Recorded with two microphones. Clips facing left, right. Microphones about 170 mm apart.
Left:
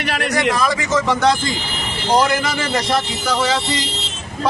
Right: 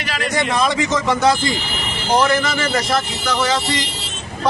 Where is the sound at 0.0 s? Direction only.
60° left (ahead or behind).